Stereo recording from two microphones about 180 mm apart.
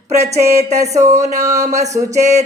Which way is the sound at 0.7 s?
20° right (ahead or behind).